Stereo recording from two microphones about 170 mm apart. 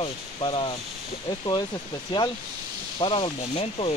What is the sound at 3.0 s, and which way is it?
Speech, 30° left (ahead or behind).